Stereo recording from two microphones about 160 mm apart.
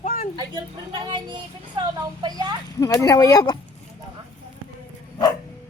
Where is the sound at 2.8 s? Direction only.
20° left (ahead or behind).